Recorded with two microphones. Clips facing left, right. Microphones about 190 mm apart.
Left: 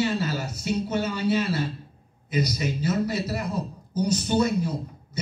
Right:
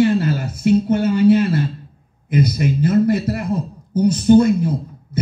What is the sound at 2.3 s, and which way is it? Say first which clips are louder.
A man's voice: right 8 dB; 55° right (ahead or behind).